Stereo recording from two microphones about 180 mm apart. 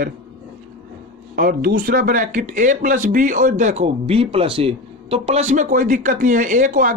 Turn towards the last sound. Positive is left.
turn(degrees=-45)  # may be behind; listen again after turning